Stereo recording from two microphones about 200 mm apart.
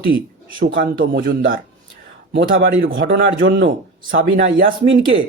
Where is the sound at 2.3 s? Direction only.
50° right (ahead or behind); by 4.2 s 65° right (ahead or behind).